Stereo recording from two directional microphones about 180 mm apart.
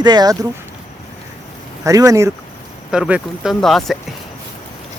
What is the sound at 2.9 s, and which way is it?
Speech, 5° right (ahead or behind).